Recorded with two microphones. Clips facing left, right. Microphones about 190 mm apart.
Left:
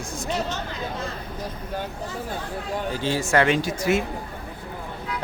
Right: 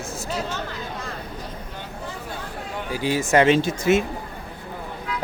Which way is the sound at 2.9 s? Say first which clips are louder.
Right 3 dB; 15° right (ahead or behind).